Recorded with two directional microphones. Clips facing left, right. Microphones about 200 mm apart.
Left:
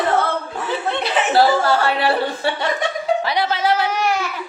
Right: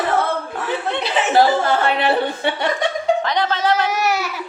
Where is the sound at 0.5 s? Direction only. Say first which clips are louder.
Even; centre (ahead or behind).